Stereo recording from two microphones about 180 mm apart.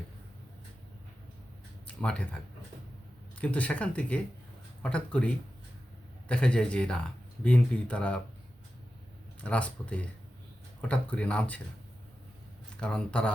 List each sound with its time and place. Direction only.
2.0 s speech: 5° left (ahead or behind)
9.4 s speech: 5° left (ahead or behind)
12.8 s speech: 5° left (ahead or behind)